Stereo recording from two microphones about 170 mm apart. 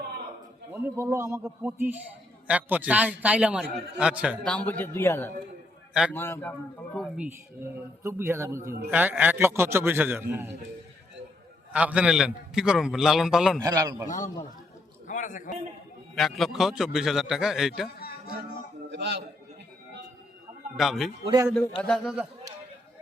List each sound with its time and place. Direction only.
0.7 s a man's voice: 15° right (ahead or behind)
4.4 s speech: 10° left (ahead or behind)
5.9 s a man's voice: 5° right (ahead or behind)
6.1 s speech: 15° left (ahead or behind)
6.9 s a man's voice: centre (ahead or behind)
8.0 s a man's voice: 15° right (ahead or behind)
11.7 s a man's voice: 5° right (ahead or behind)
13.6 s a man's voice: 20° right (ahead or behind)
15.0 s a sound: 45° left (ahead or behind)
16.1 s a man's voice: centre (ahead or behind)
18.9 s a man's voice: 90° right
20.7 s a man's voice: centre (ahead or behind)
21.2 s a man's voice: 20° right (ahead or behind)
21.8 s a man's voice: 5° left (ahead or behind)